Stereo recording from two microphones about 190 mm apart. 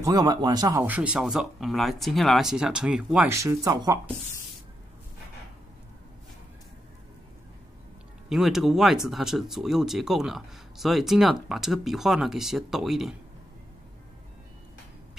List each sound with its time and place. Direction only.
0.0 s speech: 20° right (ahead or behind)
3.3 s speech: 15° right (ahead or behind)
8.3 s speech: centre (ahead or behind)